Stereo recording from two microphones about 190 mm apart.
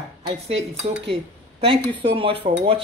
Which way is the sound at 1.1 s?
30° right (ahead or behind).